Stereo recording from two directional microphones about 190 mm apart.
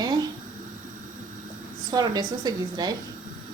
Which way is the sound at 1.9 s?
20° right (ahead or behind).